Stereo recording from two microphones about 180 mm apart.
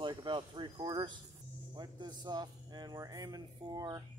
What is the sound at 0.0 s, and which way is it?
Speech, 25° right (ahead or behind).